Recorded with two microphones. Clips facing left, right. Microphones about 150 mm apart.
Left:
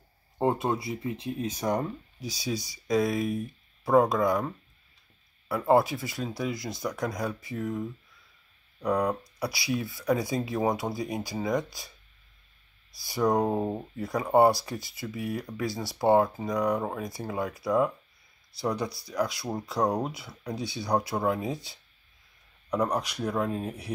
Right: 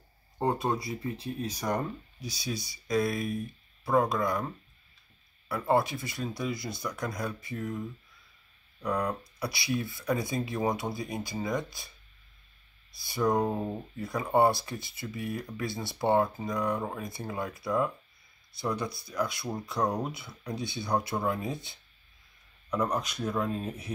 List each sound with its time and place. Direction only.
0.5 s speech: centre (ahead or behind)
1.1 s speech: 20° left (ahead or behind)
2.4 s speech: 90° left
3.3 s speech: 15° left (ahead or behind)
5.5 s speech: 10° left (ahead or behind)
6.4 s speech: 90° left
6.7 s speech: 15° left (ahead or behind)
8.8 s speech: 15° left (ahead or behind)
13.0 s speech: 15° left (ahead or behind)
22.7 s speech: 15° left (ahead or behind)